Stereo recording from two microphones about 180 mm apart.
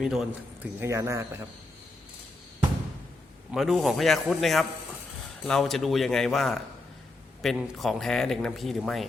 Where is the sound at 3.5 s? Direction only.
Centre (ahead or behind).